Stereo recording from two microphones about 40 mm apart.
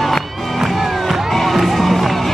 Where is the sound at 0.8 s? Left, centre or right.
Centre.